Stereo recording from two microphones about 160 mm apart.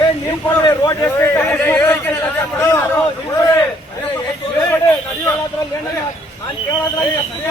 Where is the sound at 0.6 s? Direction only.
25° left (ahead or behind).